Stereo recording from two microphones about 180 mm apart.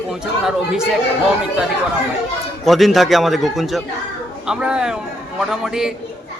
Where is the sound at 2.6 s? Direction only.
Centre (ahead or behind).